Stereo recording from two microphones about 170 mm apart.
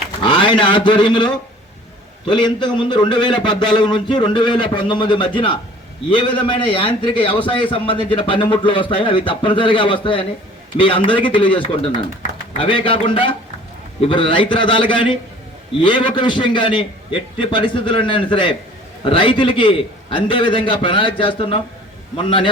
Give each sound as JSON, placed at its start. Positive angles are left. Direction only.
{"t": 0.2, "sound": "a man's voice", "side_deg": 30}